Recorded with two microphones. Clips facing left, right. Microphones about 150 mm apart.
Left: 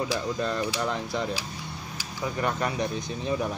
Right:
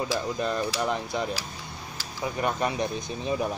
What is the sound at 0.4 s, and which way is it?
Speech, 15° right (ahead or behind).